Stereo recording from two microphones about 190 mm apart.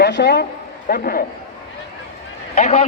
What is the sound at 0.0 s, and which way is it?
Speech, 65° left (ahead or behind).